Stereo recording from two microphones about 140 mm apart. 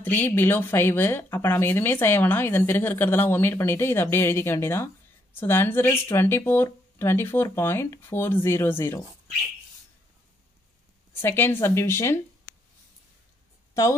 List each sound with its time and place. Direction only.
0.0 s speech: 15° left (ahead or behind)
11.1 s speech: 15° left (ahead or behind)